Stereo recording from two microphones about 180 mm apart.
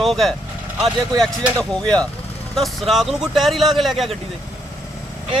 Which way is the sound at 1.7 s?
5° left (ahead or behind).